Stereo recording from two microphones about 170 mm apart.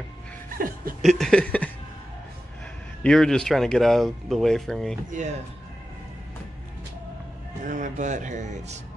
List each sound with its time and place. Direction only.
0.6 s chuckle: 55° right (ahead or behind)
1.0 s speech: centre (ahead or behind)
3.0 s speech: 5° left (ahead or behind)
7.6 s speech: 50° right (ahead or behind)